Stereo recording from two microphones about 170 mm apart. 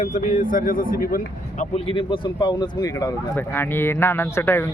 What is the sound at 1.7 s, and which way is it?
Speech, 30° left (ahead or behind).